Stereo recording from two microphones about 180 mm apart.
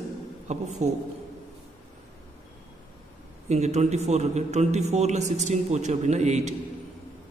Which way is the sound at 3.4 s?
40° right (ahead or behind).